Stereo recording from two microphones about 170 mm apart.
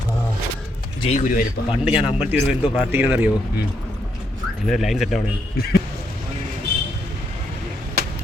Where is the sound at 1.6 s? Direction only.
70° left (ahead or behind).